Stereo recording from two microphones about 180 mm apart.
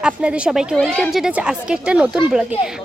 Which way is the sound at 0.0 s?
5° right (ahead or behind).